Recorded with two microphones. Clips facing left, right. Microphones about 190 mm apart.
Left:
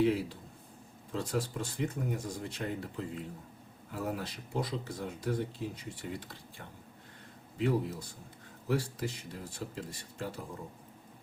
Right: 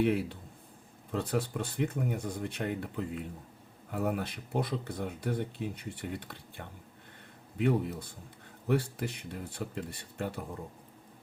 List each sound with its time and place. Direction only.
0.0 s speech: 60° right (ahead or behind)
7.6 s speech: 60° right (ahead or behind)